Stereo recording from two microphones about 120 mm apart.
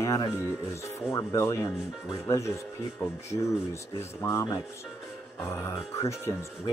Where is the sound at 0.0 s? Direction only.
30° left (ahead or behind).